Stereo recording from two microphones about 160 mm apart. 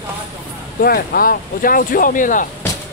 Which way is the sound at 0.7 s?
70° left (ahead or behind).